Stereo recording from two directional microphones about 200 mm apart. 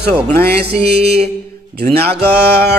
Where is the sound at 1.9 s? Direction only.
55° right (ahead or behind).